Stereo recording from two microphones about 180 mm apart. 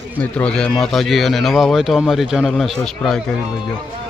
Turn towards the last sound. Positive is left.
turn(degrees=5)  # may be behind; listen again after turning